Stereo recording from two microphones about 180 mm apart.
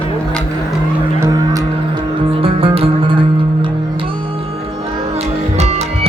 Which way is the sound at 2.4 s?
30° right (ahead or behind).